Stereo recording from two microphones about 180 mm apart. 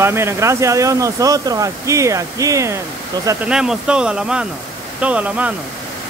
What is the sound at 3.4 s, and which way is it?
Speech, 5° right (ahead or behind).